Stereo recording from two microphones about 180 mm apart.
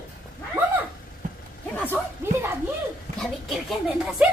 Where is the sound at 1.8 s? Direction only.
10° left (ahead or behind).